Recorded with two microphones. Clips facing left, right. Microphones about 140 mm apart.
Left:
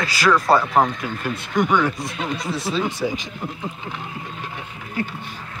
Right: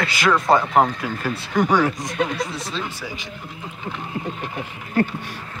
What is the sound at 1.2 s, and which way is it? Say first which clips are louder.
Speech: even; 35° right (ahead or behind).